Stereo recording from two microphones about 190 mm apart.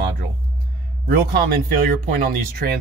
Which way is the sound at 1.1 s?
55° right (ahead or behind).